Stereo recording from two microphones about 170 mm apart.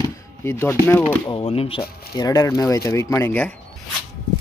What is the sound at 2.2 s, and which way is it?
Speech, 20° left (ahead or behind).